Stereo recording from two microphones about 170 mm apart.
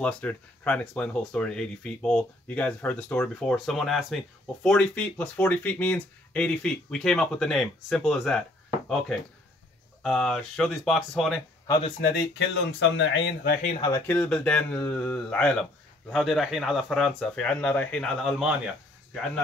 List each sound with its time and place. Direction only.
0.0 s speech: 10° left (ahead or behind)
10.0 s speech: 5° left (ahead or behind)
12.0 s speech: 80° left; by 13.7 s 65° left (ahead or behind)
13.7 s speech: 20° left (ahead or behind)
14.1 s speech: 5° left (ahead or behind)